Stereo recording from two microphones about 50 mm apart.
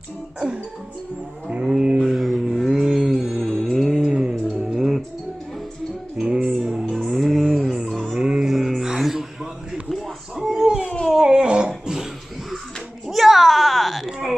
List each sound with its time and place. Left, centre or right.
1.5 s livestock: centre
2.1 s mantra: centre
3.4 s music: centre
4.1 s music: centre
4.7 s music: centre
6.1 s music: centre
6.9 s music: centre
8.0 s music: centre
8.5 s a sound: centre
9.8 s music: centre
10.5 s a sound: centre
13.1 s a sound: centre